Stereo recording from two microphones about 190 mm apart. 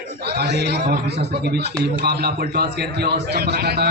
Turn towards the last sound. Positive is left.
turn(degrees=-60)  # may be behind; listen again after turning